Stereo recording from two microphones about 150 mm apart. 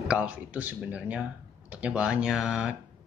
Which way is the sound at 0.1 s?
10° right (ahead or behind).